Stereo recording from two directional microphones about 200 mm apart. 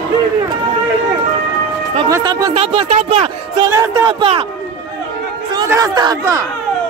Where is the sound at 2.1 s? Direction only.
15° right (ahead or behind).